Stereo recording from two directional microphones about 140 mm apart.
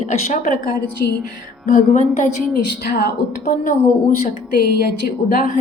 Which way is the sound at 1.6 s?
60° left (ahead or behind).